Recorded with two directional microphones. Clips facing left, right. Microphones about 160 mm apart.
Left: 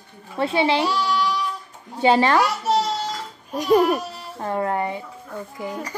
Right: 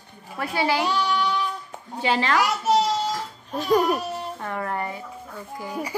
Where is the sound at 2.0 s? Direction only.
30° left (ahead or behind).